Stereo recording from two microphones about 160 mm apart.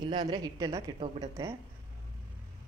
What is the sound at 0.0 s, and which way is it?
Speech, 25° right (ahead or behind).